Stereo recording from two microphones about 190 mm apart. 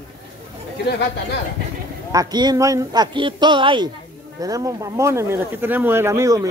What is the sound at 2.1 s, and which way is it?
Speech, 20° right (ahead or behind).